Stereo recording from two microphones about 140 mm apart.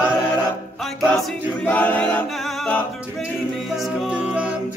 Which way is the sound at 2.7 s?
10° left (ahead or behind).